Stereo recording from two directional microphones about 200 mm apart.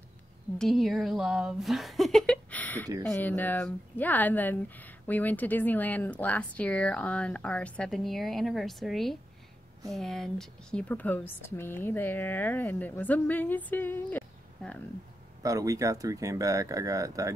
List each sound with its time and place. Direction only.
0.6 s speech: centre (ahead or behind)
15.4 s speech: 15° right (ahead or behind)